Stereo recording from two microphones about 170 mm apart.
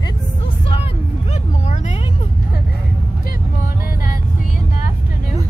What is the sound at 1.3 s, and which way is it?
Vehicle, 40° left (ahead or behind).